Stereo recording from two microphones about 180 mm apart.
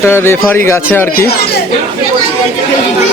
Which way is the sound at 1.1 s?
55° left (ahead or behind).